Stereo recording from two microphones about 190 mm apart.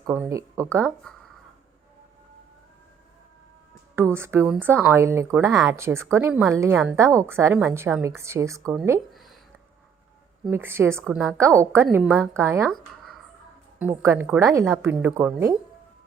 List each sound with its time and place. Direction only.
0.0 s a woman's voice: 15° right (ahead or behind)
3.9 s a woman's voice: 10° right (ahead or behind)
9.1 s a sound: centre (ahead or behind)
10.5 s a woman's voice: 10° right (ahead or behind)
13.7 s a woman's voice: 10° right (ahead or behind)